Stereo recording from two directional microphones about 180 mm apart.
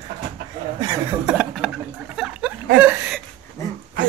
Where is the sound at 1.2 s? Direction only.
Centre (ahead or behind).